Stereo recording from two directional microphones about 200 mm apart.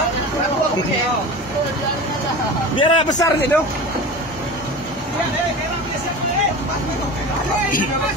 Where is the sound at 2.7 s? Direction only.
25° left (ahead or behind).